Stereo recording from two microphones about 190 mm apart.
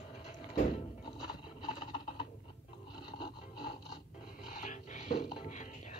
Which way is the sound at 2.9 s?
25° left (ahead or behind).